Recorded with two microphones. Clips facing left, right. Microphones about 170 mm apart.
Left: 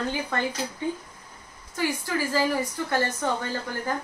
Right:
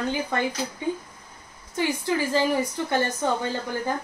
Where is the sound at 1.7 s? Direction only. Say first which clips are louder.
Right 3 dB; 20° right (ahead or behind).